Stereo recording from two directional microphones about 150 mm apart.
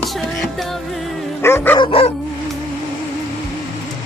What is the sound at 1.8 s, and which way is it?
Dog, 40° left (ahead or behind).